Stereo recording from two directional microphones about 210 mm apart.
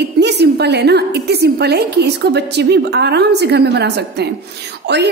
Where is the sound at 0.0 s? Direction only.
55° right (ahead or behind).